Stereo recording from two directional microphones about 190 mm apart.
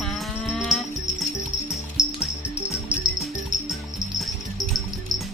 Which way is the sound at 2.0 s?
5° right (ahead or behind).